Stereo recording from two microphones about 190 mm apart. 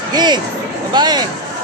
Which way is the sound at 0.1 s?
20° right (ahead or behind).